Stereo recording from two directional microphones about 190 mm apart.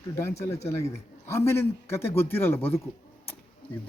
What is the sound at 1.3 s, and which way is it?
Speech, 15° left (ahead or behind).